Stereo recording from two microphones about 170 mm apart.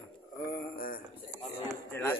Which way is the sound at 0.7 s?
60° left (ahead or behind).